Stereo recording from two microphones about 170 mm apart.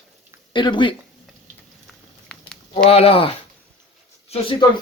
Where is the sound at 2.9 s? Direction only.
35° left (ahead or behind).